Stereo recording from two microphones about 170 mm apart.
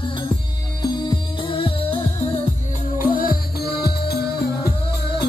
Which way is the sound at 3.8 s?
70° left (ahead or behind).